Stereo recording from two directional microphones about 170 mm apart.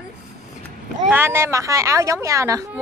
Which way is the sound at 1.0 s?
15° right (ahead or behind).